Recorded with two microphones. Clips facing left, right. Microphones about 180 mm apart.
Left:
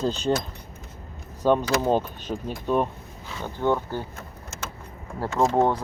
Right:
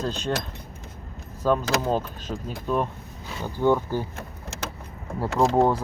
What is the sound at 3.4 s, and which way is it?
Speech, 10° right (ahead or behind).